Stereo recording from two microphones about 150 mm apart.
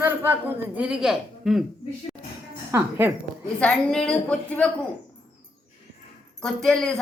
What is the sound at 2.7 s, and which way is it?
Speech, 15° right (ahead or behind).